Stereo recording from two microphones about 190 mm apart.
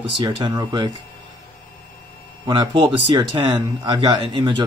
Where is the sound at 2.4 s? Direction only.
20° right (ahead or behind).